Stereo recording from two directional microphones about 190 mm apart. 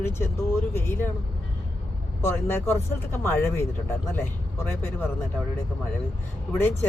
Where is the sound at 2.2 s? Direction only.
10° left (ahead or behind).